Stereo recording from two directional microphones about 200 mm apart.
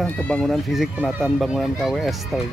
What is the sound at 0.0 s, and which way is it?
Speech, 5° left (ahead or behind).